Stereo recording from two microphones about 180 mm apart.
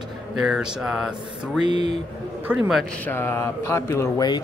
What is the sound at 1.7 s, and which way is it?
Speech, 25° right (ahead or behind).